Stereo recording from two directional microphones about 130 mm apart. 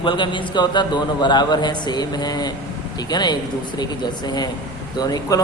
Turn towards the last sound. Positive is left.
turn(degrees=30)  # may be behind; listen again after turning